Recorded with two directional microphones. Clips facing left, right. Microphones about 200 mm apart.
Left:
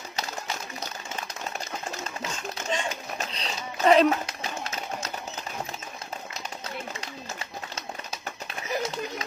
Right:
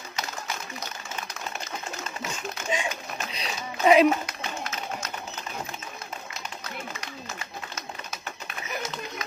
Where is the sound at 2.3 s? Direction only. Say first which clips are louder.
Right 1 dB; 10° right (ahead or behind).